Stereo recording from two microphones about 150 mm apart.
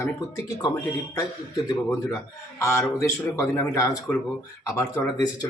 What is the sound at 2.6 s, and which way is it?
Speech, 15° left (ahead or behind).